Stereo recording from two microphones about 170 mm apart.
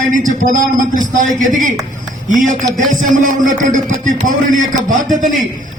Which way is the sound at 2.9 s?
50° right (ahead or behind).